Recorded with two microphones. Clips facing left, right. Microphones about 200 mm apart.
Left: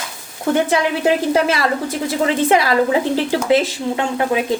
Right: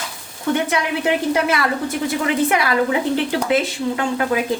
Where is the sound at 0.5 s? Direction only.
30° left (ahead or behind).